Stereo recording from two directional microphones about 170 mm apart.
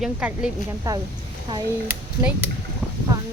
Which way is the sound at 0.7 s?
20° right (ahead or behind).